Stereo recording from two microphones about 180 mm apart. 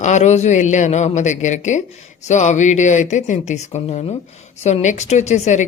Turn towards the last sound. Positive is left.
turn(degrees=40)  # may be behind; listen again after turning